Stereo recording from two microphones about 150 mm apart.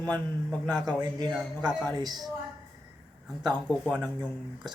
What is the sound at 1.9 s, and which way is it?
Speech, 25° right (ahead or behind).